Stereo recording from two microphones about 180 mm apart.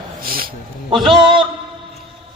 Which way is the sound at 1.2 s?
30° right (ahead or behind).